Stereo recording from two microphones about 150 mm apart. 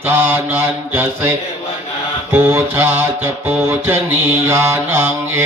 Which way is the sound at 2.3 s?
15° right (ahead or behind).